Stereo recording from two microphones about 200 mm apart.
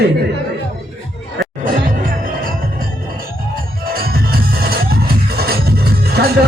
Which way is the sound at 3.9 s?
50° right (ahead or behind).